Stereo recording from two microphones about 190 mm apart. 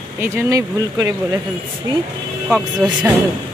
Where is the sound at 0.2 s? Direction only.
15° right (ahead or behind).